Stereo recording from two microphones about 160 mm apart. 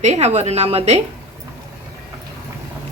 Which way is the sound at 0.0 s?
45° right (ahead or behind).